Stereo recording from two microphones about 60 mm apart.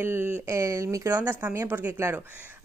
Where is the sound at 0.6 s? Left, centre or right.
Right.